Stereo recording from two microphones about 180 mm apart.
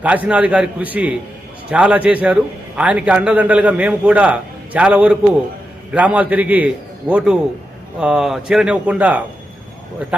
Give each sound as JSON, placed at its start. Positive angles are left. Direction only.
{"t": 0.0, "sound": "a man's voice", "side_deg": -10}